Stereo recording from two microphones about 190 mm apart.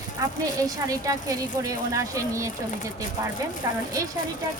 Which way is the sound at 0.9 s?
15° right (ahead or behind).